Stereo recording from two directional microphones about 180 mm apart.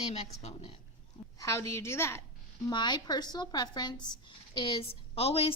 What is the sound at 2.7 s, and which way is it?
Speech, 25° left (ahead or behind).